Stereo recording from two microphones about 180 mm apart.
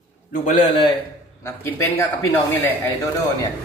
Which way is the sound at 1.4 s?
15° left (ahead or behind).